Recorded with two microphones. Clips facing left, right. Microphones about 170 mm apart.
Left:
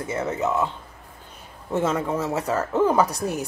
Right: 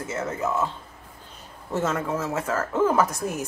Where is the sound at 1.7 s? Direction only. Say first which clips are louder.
Left 2 dB; 15° left (ahead or behind).